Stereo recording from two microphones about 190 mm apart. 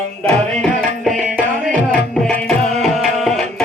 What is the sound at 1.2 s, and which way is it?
Music, 5° right (ahead or behind).